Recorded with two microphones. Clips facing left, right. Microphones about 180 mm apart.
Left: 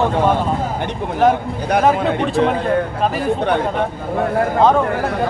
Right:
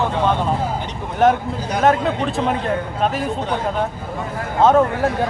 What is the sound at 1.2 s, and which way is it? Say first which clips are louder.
Speech: left 1 dB; centre (ahead or behind).